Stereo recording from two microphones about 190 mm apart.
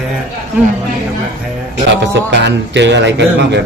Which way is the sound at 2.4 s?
65° right (ahead or behind).